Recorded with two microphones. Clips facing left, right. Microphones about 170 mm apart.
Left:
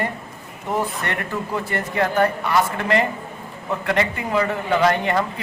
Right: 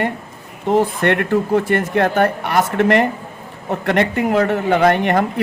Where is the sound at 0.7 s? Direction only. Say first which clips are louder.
Right 9 dB; 70° right (ahead or behind).